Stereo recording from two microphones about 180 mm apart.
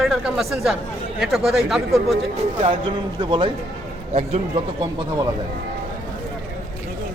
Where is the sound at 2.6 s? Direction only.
30° right (ahead or behind).